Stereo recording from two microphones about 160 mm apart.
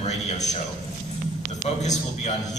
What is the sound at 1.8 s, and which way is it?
Speech, 45° left (ahead or behind).